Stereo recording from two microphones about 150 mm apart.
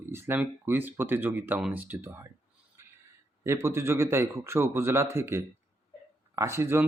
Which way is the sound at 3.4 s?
20° right (ahead or behind).